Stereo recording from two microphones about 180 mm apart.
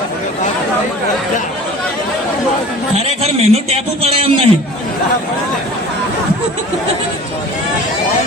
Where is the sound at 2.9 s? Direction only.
35° right (ahead or behind).